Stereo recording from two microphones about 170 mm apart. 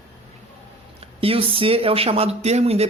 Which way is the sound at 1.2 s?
35° right (ahead or behind).